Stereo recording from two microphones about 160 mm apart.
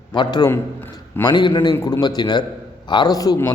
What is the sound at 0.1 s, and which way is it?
A man's voice, 25° left (ahead or behind).